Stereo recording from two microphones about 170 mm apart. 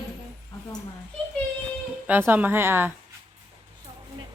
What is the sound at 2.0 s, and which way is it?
Speech, 10° right (ahead or behind).